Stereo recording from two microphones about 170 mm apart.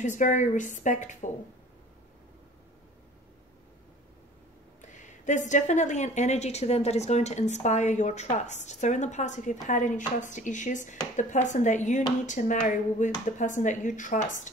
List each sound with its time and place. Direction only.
0.0 s speech: 45° left (ahead or behind)
4.8 s speech: 45° left (ahead or behind)